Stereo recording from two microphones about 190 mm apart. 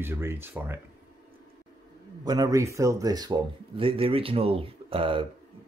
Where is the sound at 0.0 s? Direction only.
15° right (ahead or behind).